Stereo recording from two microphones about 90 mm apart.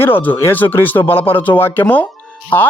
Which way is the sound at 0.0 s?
20° left (ahead or behind).